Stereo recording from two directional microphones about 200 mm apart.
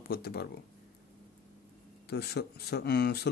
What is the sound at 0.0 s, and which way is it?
Speech, 50° left (ahead or behind).